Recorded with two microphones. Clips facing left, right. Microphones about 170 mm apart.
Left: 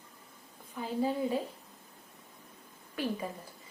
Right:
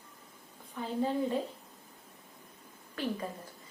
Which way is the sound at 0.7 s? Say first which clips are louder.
Even; 5° left (ahead or behind).